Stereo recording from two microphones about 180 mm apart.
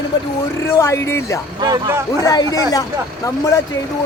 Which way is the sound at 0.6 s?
15° left (ahead or behind).